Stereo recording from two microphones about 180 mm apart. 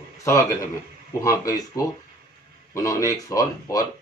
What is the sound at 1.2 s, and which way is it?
Speech, 20° left (ahead or behind).